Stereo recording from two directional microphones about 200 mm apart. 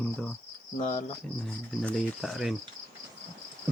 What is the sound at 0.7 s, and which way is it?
Speech, 40° left (ahead or behind).